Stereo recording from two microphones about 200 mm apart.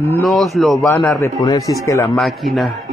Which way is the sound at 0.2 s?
Centre (ahead or behind).